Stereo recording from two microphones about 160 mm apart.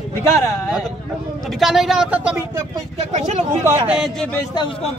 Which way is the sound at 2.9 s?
40° right (ahead or behind).